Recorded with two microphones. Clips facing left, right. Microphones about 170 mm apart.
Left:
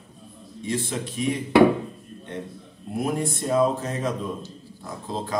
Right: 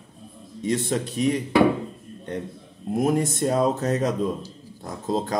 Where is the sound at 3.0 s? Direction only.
40° right (ahead or behind).